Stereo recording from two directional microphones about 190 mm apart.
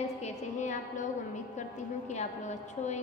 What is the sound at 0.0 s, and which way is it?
A woman's voice, 35° left (ahead or behind).